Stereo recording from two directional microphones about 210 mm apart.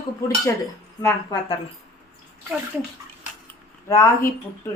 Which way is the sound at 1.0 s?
15° left (ahead or behind).